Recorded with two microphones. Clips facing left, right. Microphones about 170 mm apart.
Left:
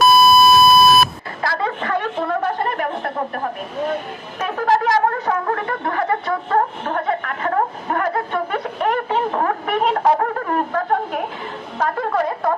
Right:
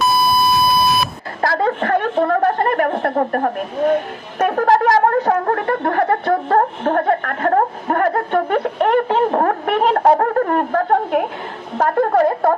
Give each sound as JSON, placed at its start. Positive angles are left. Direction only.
{"t": 0.5, "sound": "beep", "side_deg": 45}
{"t": 1.4, "sound": "a sound", "side_deg": -45}
{"t": 5.2, "sound": "speech", "side_deg": -45}